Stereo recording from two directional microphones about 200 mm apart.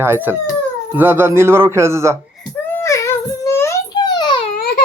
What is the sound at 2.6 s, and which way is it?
Child singing, 10° left (ahead or behind).